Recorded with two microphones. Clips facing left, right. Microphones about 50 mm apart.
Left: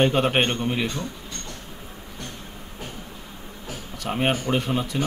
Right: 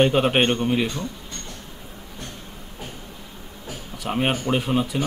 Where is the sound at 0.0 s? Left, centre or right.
Centre.